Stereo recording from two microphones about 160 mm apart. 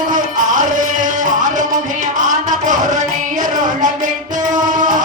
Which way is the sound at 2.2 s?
55° right (ahead or behind).